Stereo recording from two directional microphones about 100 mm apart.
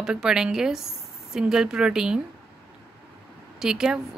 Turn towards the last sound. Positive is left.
turn(degrees=-5)  # may be behind; listen again after turning